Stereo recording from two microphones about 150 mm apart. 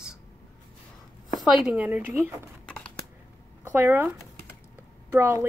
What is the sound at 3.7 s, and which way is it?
A woman's voice, 15° right (ahead or behind).